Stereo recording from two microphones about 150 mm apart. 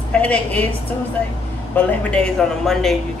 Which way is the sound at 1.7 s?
10° left (ahead or behind).